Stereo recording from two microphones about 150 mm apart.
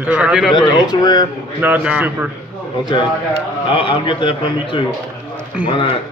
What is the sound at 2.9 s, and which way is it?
Speech, 30° left (ahead or behind).